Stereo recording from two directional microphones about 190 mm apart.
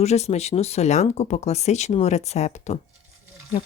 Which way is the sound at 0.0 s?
35° left (ahead or behind).